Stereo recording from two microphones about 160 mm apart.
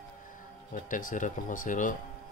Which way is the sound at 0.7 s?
55° left (ahead or behind).